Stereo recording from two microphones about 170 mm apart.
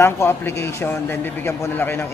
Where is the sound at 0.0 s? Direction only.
15° left (ahead or behind).